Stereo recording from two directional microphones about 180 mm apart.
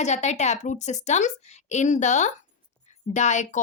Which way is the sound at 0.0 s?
40° left (ahead or behind).